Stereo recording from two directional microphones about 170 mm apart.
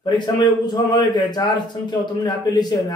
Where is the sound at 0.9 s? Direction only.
25° left (ahead or behind).